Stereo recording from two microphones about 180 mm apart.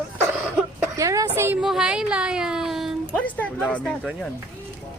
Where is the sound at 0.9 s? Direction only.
20° right (ahead or behind); by 4.3 s 5° left (ahead or behind).